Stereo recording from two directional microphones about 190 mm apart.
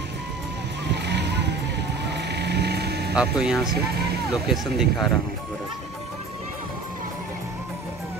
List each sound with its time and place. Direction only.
0.9 s vehicle: 65° right (ahead or behind)
3.2 s speech: 5° right (ahead or behind)